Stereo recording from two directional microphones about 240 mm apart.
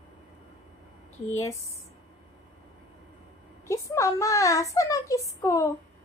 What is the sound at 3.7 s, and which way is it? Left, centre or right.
A woman's voice, centre.